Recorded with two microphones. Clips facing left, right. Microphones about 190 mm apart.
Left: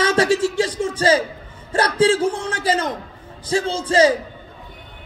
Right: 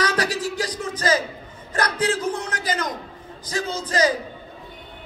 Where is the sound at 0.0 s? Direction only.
25° left (ahead or behind).